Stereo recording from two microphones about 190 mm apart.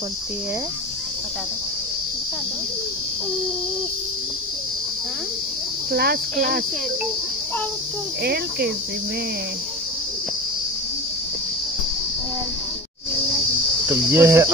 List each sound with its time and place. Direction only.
5.9 s speech: 55° right (ahead or behind)
8.2 s speech: 55° right (ahead or behind)
13.8 s cricket: 10° right (ahead or behind)